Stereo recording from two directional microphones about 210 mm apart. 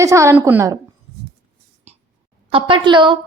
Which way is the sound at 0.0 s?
15° right (ahead or behind).